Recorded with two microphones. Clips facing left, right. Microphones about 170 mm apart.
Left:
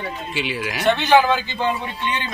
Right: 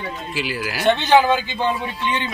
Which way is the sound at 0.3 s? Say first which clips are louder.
Even; centre (ahead or behind).